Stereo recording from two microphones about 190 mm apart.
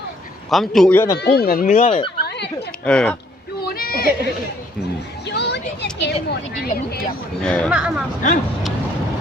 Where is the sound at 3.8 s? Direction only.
50° left (ahead or behind).